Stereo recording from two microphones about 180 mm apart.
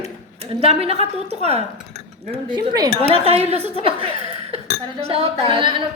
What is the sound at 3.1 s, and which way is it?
Speech, 35° right (ahead or behind).